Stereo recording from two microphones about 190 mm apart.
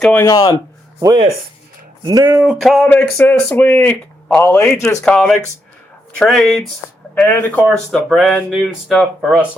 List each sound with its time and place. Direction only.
0.0 s speech: 10° left (ahead or behind)
0.3 s speech: 25° left (ahead or behind)
2.0 s speech: 20° right (ahead or behind)
2.4 s speech: centre (ahead or behind)